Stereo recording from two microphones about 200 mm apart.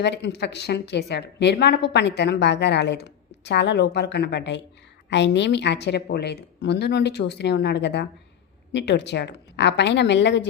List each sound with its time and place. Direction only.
0.0 s a woman's voice: 60° left (ahead or behind)